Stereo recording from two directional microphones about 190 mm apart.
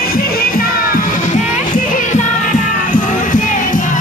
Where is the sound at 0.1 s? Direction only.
50° left (ahead or behind).